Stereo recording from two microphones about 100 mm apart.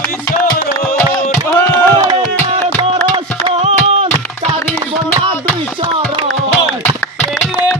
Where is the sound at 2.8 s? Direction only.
75° right (ahead or behind).